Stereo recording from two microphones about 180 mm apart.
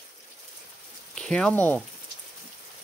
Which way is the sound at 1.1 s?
5° left (ahead or behind).